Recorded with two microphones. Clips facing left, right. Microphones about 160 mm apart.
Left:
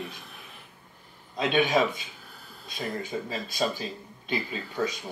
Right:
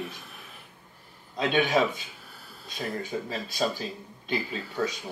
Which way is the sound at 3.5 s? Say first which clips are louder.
Even; 10° left (ahead or behind).